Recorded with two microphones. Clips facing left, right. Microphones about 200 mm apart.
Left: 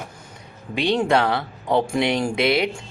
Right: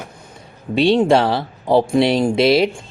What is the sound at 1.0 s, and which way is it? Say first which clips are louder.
Speech: right 5 dB; 25° right (ahead or behind).